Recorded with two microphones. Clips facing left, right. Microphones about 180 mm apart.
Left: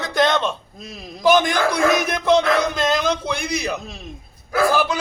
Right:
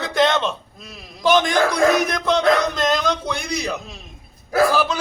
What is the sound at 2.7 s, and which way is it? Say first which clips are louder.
A man's voice: even; 5° left (ahead or behind).